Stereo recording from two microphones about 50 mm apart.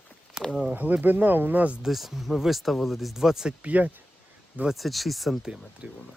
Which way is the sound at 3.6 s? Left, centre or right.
Right.